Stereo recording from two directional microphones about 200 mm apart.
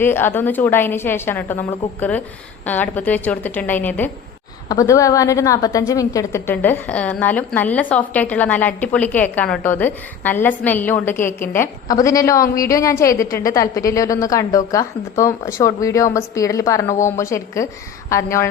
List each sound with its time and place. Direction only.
0.0 s a woman's voice: 10° left (ahead or behind)